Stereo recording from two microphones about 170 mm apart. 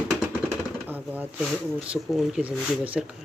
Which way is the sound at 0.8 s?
10° right (ahead or behind).